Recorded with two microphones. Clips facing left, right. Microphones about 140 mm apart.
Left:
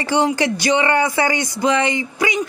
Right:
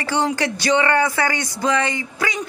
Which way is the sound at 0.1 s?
15° left (ahead or behind).